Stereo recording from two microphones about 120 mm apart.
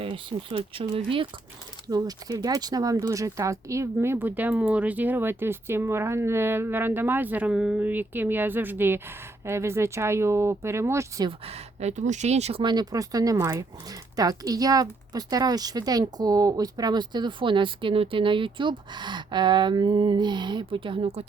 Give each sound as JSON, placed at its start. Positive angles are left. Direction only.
{"t": 0.0, "sound": "speech", "side_deg": -50}
{"t": 1.9, "sound": "speech", "side_deg": -30}
{"t": 11.3, "sound": "speech", "side_deg": -60}
{"t": 12.6, "sound": "speech", "side_deg": -35}